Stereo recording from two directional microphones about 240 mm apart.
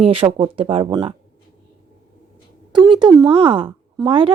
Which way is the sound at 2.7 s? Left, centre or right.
Centre.